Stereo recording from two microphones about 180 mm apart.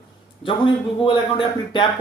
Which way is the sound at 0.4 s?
30° left (ahead or behind).